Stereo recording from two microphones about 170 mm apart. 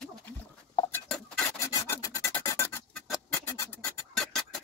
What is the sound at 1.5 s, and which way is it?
Filing, 15° left (ahead or behind).